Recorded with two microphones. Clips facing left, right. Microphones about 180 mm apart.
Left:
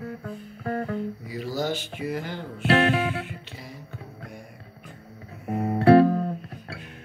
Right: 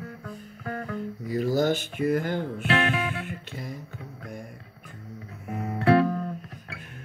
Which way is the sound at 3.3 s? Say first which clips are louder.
Right 4 dB; 50° right (ahead or behind).